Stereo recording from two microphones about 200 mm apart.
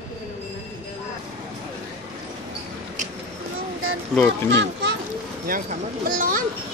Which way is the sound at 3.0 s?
40° right (ahead or behind).